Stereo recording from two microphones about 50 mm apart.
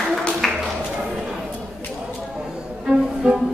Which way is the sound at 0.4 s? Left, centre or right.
Centre.